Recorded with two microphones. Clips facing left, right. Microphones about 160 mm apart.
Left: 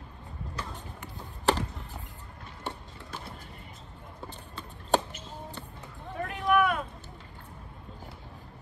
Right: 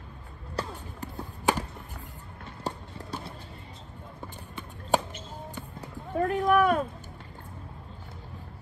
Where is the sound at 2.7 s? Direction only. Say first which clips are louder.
Right 4 dB; 35° right (ahead or behind).